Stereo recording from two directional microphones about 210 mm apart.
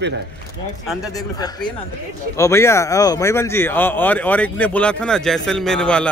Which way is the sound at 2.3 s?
15° left (ahead or behind).